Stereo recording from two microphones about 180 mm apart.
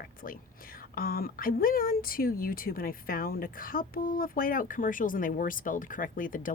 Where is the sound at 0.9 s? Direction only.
55° left (ahead or behind).